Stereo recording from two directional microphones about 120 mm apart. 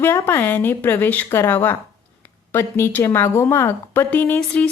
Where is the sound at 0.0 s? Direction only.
20° left (ahead or behind).